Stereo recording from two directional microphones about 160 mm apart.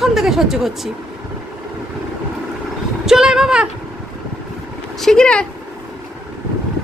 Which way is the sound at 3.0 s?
5° right (ahead or behind).